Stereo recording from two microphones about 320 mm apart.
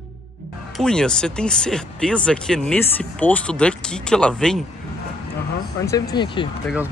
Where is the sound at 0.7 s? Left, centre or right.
Centre.